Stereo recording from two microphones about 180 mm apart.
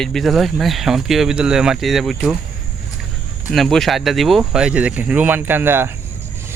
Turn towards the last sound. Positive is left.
turn(degrees=-10)  # may be behind; listen again after turning